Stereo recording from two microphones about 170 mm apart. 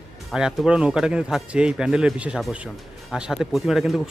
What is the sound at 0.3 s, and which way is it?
Speech, 5° right (ahead or behind).